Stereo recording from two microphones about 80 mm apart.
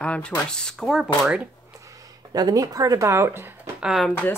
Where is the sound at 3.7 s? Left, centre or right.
Centre.